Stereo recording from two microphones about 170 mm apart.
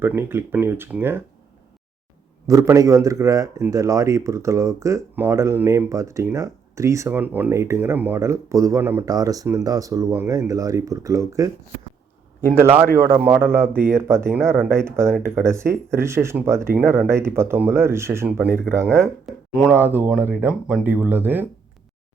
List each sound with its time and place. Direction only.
0.0 s a man's voice: 10° right (ahead or behind)
2.5 s a man's voice: 20° right (ahead or behind)
12.5 s a man's voice: 10° right (ahead or behind)